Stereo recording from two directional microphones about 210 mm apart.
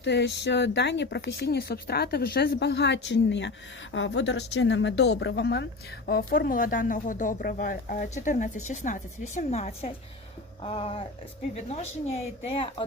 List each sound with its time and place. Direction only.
0.0 s a woman's voice: 55° left (ahead or behind); by 12.8 s 25° left (ahead or behind)